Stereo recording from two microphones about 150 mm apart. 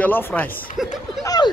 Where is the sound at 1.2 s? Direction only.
25° left (ahead or behind).